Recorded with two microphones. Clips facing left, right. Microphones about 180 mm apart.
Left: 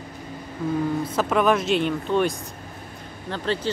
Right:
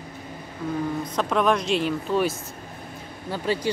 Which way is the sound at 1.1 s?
5° left (ahead or behind).